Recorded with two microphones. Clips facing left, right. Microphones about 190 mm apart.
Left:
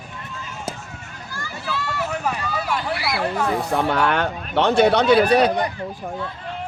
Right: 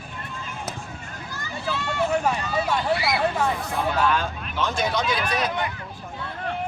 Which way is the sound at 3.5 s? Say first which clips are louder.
Left 5 dB; 65° left (ahead or behind).